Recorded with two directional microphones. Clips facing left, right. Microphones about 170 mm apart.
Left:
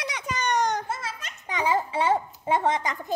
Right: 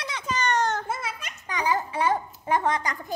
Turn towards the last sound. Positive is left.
turn(degrees=20)  # may be behind; listen again after turning